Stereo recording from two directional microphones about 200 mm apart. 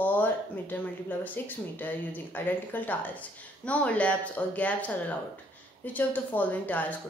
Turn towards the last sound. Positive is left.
turn(degrees=10)  # may be behind; listen again after turning